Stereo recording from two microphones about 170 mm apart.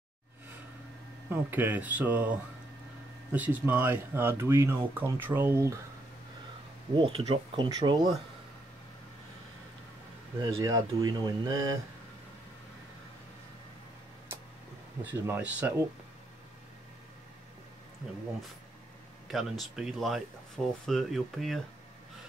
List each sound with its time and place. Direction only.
1.3 s speech: 10° right (ahead or behind)
6.9 s speech: 30° right (ahead or behind)
10.4 s speech: 20° right (ahead or behind)
15.0 s speech: 10° right (ahead or behind)
19.3 s speech: centre (ahead or behind)